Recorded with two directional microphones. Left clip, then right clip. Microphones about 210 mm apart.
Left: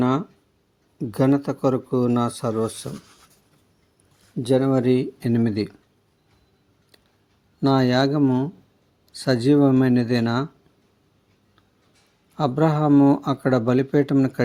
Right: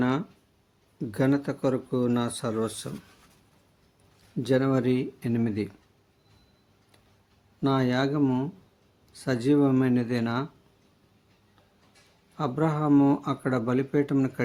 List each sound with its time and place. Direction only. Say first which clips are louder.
0.0 s speech: left 5 dB; 20° left (ahead or behind)
4.4 s speech: left 5 dB; 15° left (ahead or behind)
7.6 s speech: left 6 dB; 30° left (ahead or behind)
12.4 s speech: left 7 dB; 30° left (ahead or behind)